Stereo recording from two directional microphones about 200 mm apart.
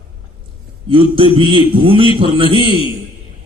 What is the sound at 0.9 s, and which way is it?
Speech, 25° right (ahead or behind).